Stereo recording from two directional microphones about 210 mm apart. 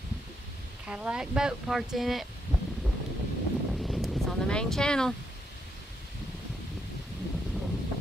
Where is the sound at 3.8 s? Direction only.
Centre (ahead or behind).